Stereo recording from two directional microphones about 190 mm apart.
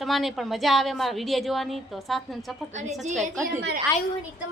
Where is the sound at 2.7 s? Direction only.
40° right (ahead or behind).